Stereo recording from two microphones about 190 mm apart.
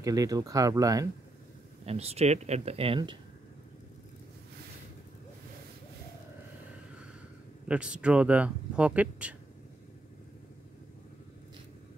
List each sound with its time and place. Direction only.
0.0 s speech: 20° right (ahead or behind)
1.9 s speech: 30° right (ahead or behind)
7.6 s speech: 5° right (ahead or behind)